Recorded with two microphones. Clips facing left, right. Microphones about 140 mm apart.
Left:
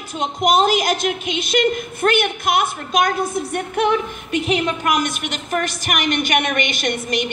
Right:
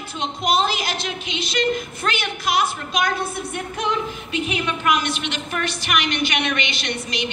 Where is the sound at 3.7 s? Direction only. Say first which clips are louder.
Left 6 dB; 65° left (ahead or behind).